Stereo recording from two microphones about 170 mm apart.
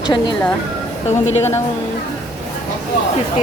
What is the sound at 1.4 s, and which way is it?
Speech, 15° left (ahead or behind).